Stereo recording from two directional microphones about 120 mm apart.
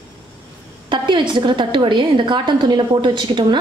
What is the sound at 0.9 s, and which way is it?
A woman's voice, 40° right (ahead or behind).